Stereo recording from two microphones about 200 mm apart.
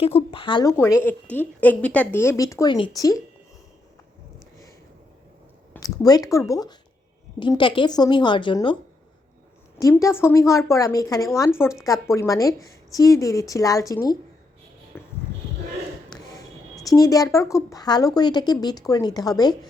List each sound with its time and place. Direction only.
0.0 s a woman's voice: 30° left (ahead or behind)
5.7 s a woman's voice: 15° left (ahead or behind)
9.7 s a woman's voice: 15° left (ahead or behind)
14.9 s a sound: 10° left (ahead or behind)
16.8 s a woman's voice: 15° left (ahead or behind)